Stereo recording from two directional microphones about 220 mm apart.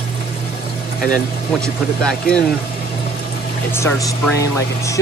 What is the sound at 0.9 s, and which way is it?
Speech, 40° left (ahead or behind).